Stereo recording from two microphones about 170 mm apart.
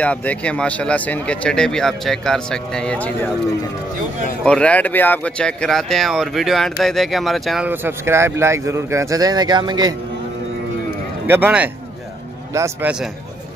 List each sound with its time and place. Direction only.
0.0 s speech: 10° left (ahead or behind)
4.5 s speech: 5° left (ahead or behind); by 9.9 s 25° right (ahead or behind)
11.2 s a man's voice: 10° right (ahead or behind)